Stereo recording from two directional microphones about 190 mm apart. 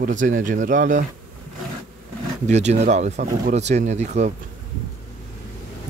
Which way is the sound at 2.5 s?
35° right (ahead or behind).